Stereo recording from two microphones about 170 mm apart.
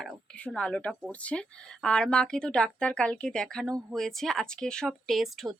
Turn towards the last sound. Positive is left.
turn(degrees=0)  # may be behind; listen again after turning